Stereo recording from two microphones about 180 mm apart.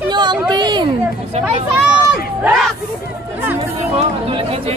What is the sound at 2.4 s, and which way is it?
Speech, centre (ahead or behind).